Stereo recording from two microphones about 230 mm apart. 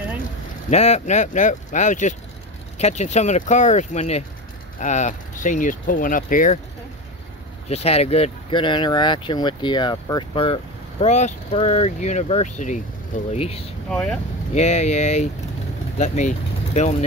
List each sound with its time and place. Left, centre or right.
0.7 s speech: left
7.6 s speech: left
13.8 s speech: centre
14.5 s speech: left